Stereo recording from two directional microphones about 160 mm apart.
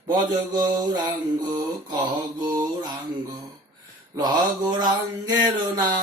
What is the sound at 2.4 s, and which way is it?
Mantra, 25° right (ahead or behind).